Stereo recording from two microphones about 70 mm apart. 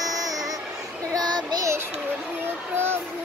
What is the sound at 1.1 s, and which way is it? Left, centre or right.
Child singing, right.